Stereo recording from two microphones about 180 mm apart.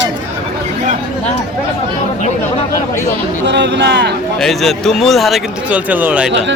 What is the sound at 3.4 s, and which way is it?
Speech, 80° right.